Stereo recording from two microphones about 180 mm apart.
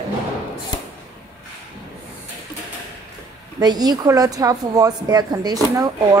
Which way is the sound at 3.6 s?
20° right (ahead or behind).